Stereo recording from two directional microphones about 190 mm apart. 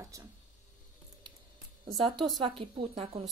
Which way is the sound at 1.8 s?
20° right (ahead or behind).